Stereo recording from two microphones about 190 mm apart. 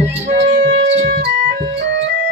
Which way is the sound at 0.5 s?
75° right (ahead or behind).